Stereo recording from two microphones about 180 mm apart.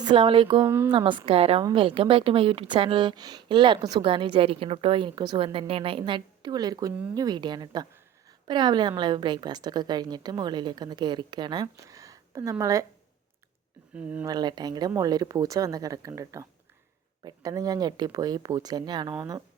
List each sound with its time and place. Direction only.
0.0 s speech: 25° right (ahead or behind)
13.9 s speech: 10° right (ahead or behind)
14.3 s speech: 25° right (ahead or behind)